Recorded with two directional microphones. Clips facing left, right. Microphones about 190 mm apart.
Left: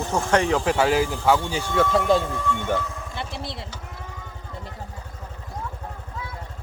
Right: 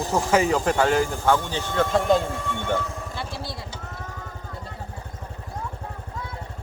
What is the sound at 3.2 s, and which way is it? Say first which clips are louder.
Vehicle: left 3 dB; 25° left (ahead or behind).